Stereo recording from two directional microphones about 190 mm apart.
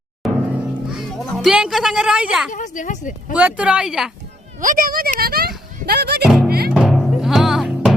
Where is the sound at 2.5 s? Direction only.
40° left (ahead or behind).